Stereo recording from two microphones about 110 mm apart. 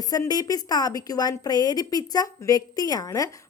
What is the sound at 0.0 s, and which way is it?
A woman's voice, 35° left (ahead or behind).